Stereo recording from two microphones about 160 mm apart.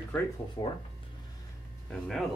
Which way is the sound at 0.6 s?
30° left (ahead or behind).